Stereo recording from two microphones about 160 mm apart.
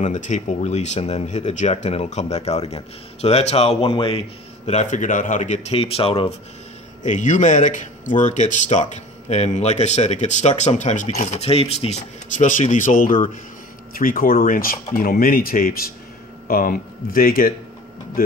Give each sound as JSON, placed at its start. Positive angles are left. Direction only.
{"t": 0.0, "sound": "a man's voice", "side_deg": 50}
{"t": 7.0, "sound": "a man's voice", "side_deg": 50}